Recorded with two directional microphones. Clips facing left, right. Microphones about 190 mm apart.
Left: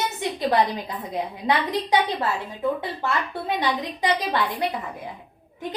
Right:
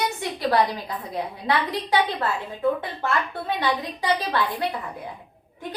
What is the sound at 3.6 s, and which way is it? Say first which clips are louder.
A woman's voice: even; 20° left (ahead or behind).